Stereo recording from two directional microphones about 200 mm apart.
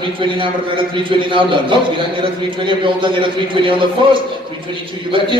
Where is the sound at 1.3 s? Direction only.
25° right (ahead or behind).